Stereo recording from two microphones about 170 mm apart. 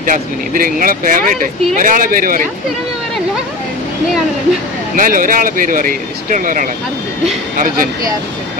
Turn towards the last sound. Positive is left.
turn(degrees=-50)  # may be behind; listen again after turning